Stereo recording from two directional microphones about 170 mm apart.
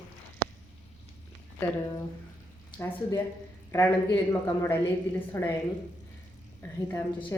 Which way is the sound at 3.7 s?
15° left (ahead or behind).